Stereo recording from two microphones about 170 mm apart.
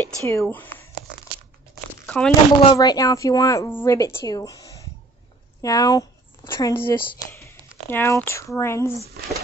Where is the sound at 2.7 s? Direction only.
20° left (ahead or behind).